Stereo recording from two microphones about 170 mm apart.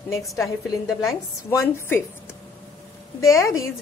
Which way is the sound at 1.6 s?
15° left (ahead or behind).